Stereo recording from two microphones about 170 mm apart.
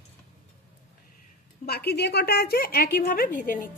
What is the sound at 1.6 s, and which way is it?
A woman's voice, 70° left (ahead or behind).